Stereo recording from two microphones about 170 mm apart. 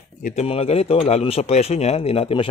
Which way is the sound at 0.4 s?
35° left (ahead or behind).